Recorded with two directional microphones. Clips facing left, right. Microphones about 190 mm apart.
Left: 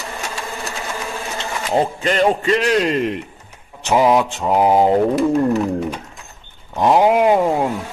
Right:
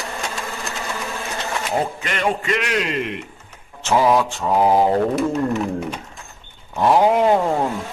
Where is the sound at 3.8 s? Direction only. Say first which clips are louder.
Left 2 dB; 15° left (ahead or behind).